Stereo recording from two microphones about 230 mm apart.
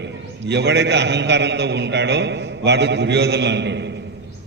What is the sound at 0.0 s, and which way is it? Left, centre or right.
A man's voice, right.